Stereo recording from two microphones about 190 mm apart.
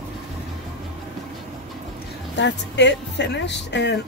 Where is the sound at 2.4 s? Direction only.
70° left (ahead or behind).